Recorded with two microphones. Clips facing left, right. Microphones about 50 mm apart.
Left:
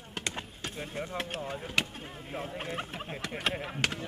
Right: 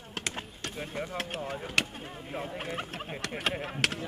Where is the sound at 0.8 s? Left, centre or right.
Centre.